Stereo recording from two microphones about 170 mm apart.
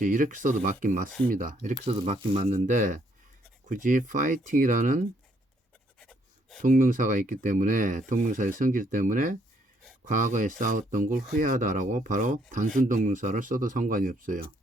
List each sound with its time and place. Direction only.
0.0 s speech: 50° right (ahead or behind)
1.8 s speech: 35° right (ahead or behind)
6.0 s writing: 5° left (ahead or behind)
6.6 s speech: 55° right (ahead or behind)